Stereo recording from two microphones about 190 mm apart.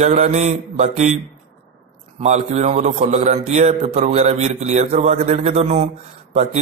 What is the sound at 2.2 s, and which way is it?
Speech, 35° right (ahead or behind).